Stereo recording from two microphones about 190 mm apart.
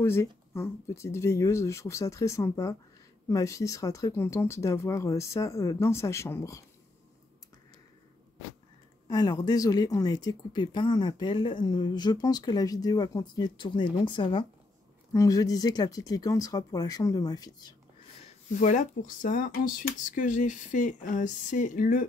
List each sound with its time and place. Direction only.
0.0 s speech: 15° left (ahead or behind)
9.0 s speech: 20° left (ahead or behind)
18.2 s speech: 40° left (ahead or behind)